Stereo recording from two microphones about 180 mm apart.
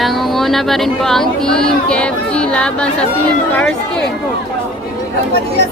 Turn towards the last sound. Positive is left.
turn(degrees=5)  # may be behind; listen again after turning